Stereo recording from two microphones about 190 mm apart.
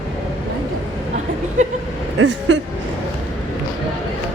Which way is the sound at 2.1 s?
70° right (ahead or behind).